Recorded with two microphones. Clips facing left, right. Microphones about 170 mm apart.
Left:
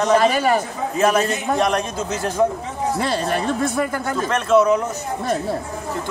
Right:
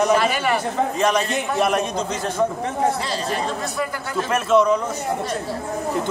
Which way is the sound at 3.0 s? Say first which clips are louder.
Left 3 dB; 55° left (ahead or behind).